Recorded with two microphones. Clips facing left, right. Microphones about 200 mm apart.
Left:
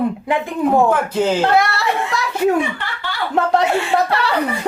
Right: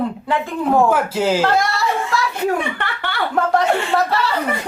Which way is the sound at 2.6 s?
60° right (ahead or behind).